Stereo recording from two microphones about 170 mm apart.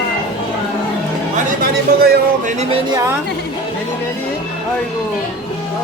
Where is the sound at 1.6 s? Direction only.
65° right (ahead or behind).